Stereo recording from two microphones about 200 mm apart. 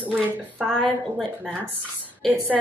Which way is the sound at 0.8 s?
Centre (ahead or behind).